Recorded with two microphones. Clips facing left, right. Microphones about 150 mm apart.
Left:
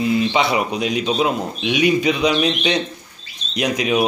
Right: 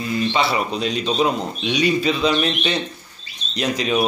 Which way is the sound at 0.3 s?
15° left (ahead or behind).